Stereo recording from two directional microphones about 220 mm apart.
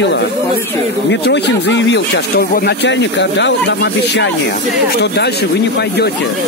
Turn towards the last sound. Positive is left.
turn(degrees=50)  # may be behind; listen again after turning